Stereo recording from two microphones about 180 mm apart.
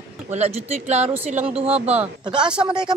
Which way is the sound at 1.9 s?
5° right (ahead or behind).